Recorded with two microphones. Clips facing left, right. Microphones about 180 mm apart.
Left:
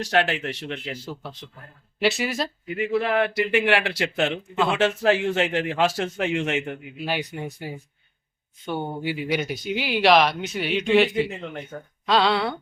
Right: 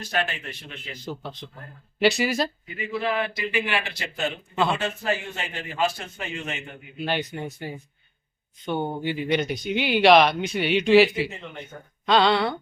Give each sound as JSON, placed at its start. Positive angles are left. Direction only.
{"t": 0.0, "sound": "speech", "side_deg": 80}
{"t": 1.0, "sound": "speech", "side_deg": 5}
{"t": 2.6, "sound": "a man's voice", "side_deg": 60}
{"t": 6.9, "sound": "speech", "side_deg": 5}